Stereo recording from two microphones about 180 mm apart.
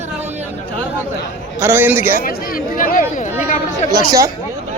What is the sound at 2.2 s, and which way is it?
Speech, 55° left (ahead or behind).